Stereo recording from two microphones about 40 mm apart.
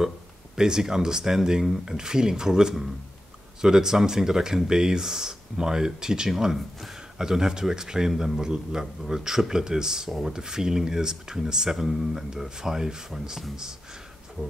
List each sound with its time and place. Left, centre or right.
0.6 s speech: centre